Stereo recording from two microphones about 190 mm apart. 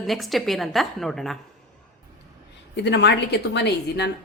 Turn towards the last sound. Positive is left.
turn(degrees=60)  # may be behind; listen again after turning